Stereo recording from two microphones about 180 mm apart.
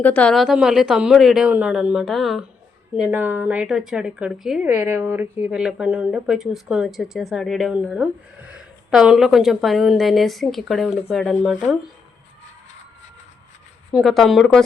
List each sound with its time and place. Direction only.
0.0 s a woman's voice: 5° left (ahead or behind)
13.9 s a woman's voice: centre (ahead or behind)